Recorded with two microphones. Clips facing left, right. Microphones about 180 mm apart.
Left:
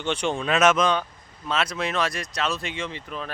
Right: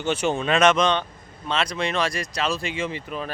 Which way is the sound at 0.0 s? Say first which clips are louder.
Right 2 dB; 5° right (ahead or behind).